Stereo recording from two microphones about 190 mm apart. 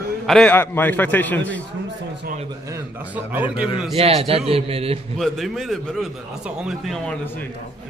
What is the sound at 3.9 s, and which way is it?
A man's voice, 30° right (ahead or behind).